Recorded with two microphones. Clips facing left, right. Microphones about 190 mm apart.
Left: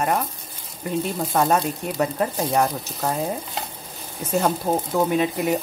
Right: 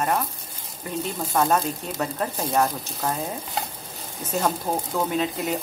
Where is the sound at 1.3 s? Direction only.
5° left (ahead or behind).